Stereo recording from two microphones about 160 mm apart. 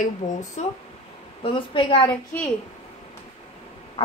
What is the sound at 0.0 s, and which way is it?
Speech, 45° left (ahead or behind).